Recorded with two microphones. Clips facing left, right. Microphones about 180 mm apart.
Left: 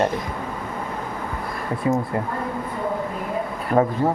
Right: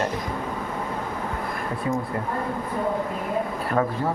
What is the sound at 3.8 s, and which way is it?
Speech, 30° left (ahead or behind).